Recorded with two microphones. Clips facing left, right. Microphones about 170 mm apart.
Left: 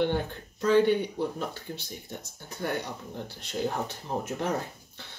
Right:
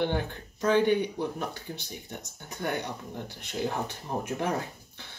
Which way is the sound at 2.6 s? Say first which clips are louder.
Even; 15° right (ahead or behind).